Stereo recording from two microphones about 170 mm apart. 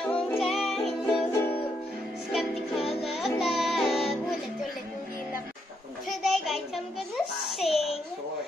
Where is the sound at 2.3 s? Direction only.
Centre (ahead or behind).